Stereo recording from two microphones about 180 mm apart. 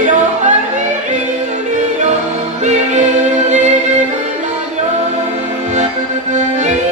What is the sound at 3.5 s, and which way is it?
Music, 40° right (ahead or behind).